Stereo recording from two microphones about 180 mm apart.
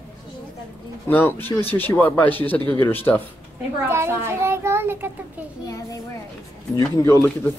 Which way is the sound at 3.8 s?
15° right (ahead or behind).